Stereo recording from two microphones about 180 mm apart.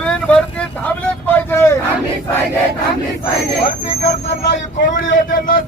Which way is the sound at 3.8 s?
35° left (ahead or behind).